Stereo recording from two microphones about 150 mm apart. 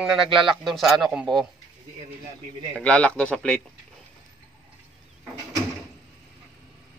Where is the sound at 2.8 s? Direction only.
10° left (ahead or behind).